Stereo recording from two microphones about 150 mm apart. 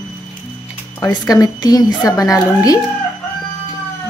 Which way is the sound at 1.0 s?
25° left (ahead or behind).